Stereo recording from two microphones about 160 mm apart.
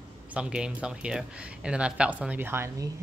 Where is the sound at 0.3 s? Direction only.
5° right (ahead or behind).